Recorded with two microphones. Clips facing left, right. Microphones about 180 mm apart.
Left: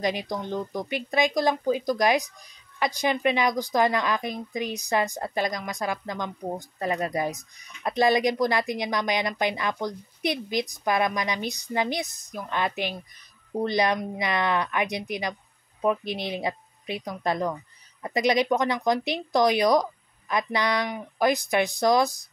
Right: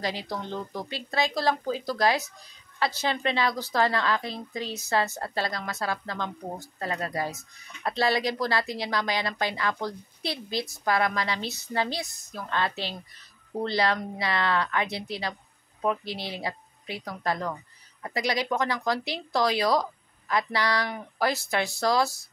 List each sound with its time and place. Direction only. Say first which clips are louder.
0.0 s speech: left 4 dB; 20° left (ahead or behind)